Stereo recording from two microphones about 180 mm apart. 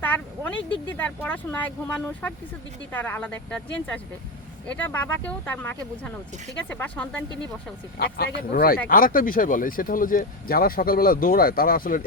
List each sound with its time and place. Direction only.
0.0 s speech: 10° left (ahead or behind)
7.9 s speech: 60° left (ahead or behind)